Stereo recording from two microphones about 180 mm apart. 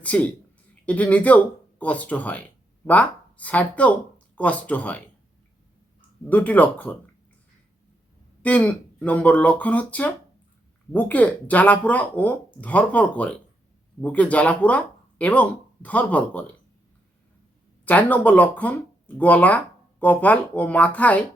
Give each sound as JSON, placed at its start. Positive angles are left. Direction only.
{"t": 0.0, "sound": "speech", "side_deg": 10}
{"t": 6.2, "sound": "speech", "side_deg": 10}
{"t": 8.4, "sound": "speech", "side_deg": 5}
{"t": 17.8, "sound": "speech", "side_deg": 10}